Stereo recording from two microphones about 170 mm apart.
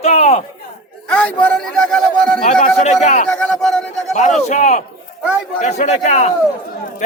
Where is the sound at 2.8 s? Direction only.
40° left (ahead or behind).